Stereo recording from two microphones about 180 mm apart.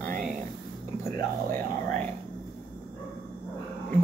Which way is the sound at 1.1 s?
15° left (ahead or behind).